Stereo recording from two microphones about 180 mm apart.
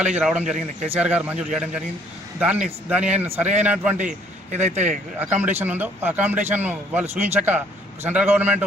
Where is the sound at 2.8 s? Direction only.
5° right (ahead or behind).